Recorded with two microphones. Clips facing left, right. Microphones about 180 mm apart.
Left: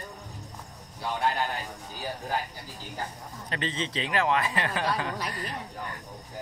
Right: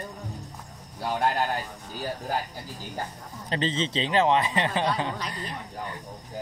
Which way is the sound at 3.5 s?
30° right (ahead or behind).